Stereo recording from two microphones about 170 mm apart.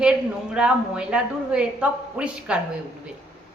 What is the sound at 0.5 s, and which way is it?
A woman's voice, 5° right (ahead or behind).